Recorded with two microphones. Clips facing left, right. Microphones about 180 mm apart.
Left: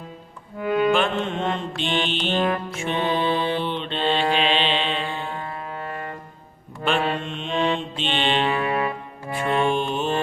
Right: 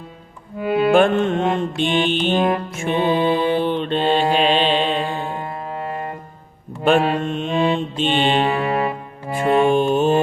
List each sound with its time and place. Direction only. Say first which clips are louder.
0.9 s music: right 8 dB; 50° right (ahead or behind)
1.5 s mantra: right 6 dB; 50° right (ahead or behind)
2.3 s music: right 3 dB; 15° right (ahead or behind)
2.6 s mantra: right 3 dB; 45° right (ahead or behind)
2.9 s music: right 5 dB; 10° right (ahead or behind)
3.5 s mantra: right 7 dB; 45° right (ahead or behind)
5.3 s music: right 4 dB; 15° right (ahead or behind)
5.5 s music: right 5 dB; 35° right (ahead or behind)
6.8 s mantra: right 7 dB; 45° right (ahead or behind)
8.4 s music: right 3 dB; 30° right (ahead or behind)
9.3 s music: right 6 dB; 40° right (ahead or behind)